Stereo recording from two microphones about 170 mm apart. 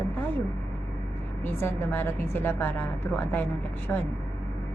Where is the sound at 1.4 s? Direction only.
15° left (ahead or behind).